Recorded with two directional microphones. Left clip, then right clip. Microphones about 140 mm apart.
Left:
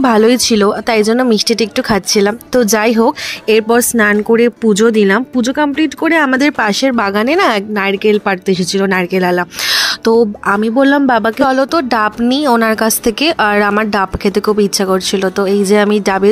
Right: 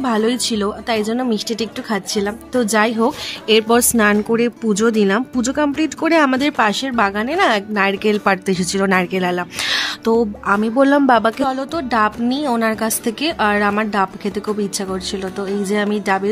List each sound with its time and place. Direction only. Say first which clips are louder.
0.0 s speech: left 8 dB; 50° left (ahead or behind); by 5.2 s 35° left (ahead or behind)
5.3 s speech: left 5 dB; 20° left (ahead or behind); by 7.6 s 45° left (ahead or behind)
7.7 s a woman's voice: left 4 dB; 25° left (ahead or behind)
11.4 s speech: left 9 dB; 45° left (ahead or behind)